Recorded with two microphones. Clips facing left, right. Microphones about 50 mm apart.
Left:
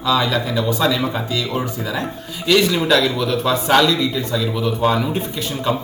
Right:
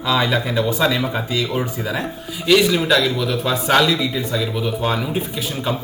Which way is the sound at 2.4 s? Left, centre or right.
Centre.